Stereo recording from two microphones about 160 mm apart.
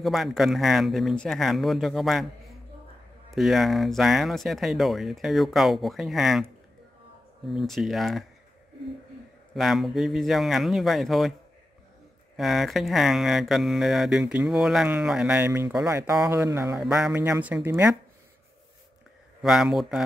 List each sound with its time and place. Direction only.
0.0 s speech: centre (ahead or behind)
3.3 s speech: centre (ahead or behind)
7.4 s speech: centre (ahead or behind)
9.6 s speech: centre (ahead or behind)
12.4 s speech: centre (ahead or behind); by 16.7 s 15° right (ahead or behind)
16.7 s speech: 5° right (ahead or behind)
19.4 s speech: centre (ahead or behind)